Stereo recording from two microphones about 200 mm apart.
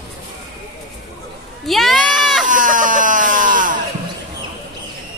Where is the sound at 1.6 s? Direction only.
Centre (ahead or behind).